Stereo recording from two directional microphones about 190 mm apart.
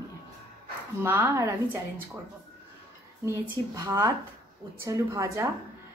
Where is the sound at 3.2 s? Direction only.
15° right (ahead or behind).